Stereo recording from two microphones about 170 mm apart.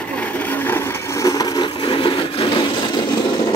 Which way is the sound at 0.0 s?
10° left (ahead or behind).